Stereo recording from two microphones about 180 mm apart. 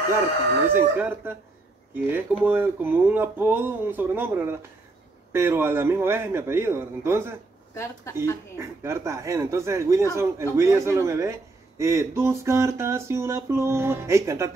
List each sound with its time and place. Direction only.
0.7 s speech: 10° right (ahead or behind)
7.7 s speech: 15° left (ahead or behind)
8.5 s speech: 15° right (ahead or behind)